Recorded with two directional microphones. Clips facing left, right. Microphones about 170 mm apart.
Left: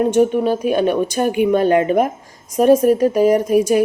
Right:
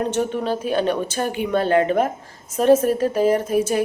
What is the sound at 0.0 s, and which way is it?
Speech, 10° left (ahead or behind).